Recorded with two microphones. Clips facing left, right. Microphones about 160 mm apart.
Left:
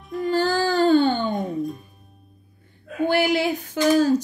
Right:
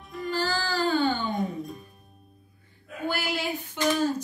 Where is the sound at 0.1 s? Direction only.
Centre (ahead or behind).